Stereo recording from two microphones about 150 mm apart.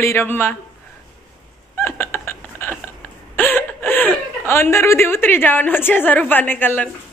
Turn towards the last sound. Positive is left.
turn(degrees=10)  # may be behind; listen again after turning